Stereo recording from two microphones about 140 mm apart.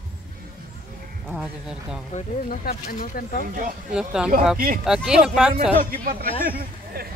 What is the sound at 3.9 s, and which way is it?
Speech, 5° right (ahead or behind).